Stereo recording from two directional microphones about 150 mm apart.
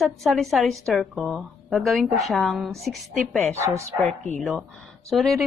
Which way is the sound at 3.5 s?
20° right (ahead or behind).